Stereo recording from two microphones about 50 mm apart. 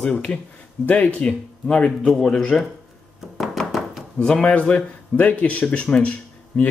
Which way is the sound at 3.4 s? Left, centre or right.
Centre.